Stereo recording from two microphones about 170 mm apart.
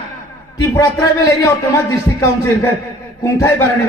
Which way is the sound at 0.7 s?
20° left (ahead or behind).